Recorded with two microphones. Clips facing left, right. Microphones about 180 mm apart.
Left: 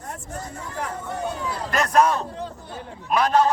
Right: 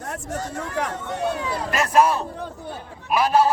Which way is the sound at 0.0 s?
85° right.